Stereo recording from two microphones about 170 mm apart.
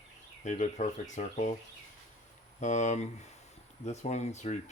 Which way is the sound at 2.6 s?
45° left (ahead or behind).